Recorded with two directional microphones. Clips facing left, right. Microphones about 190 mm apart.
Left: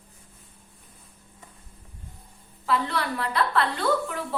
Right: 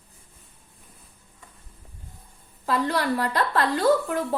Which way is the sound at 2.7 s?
40° right (ahead or behind).